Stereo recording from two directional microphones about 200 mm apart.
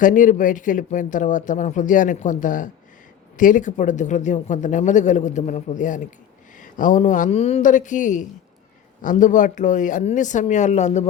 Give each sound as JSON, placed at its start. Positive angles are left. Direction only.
{"t": 0.0, "sound": "speech", "side_deg": 40}